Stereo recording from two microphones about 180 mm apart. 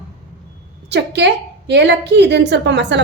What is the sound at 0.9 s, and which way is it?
A woman's voice, 70° right (ahead or behind).